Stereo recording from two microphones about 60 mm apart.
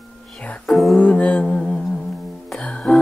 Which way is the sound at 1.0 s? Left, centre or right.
Left.